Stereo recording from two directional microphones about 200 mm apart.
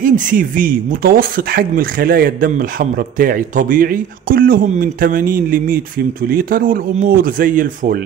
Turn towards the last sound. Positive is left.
turn(degrees=-45)  # may be behind; listen again after turning